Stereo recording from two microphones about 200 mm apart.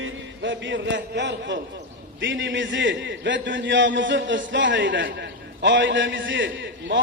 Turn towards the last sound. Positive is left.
turn(degrees=-60)  # may be behind; listen again after turning